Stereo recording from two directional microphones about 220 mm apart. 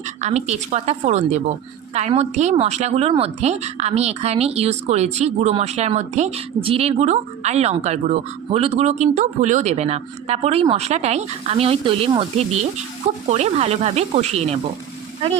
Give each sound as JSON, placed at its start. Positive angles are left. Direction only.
{"t": 0.2, "sound": "a woman's voice", "side_deg": -30}